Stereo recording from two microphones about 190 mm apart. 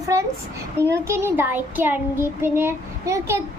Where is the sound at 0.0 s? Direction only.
15° right (ahead or behind).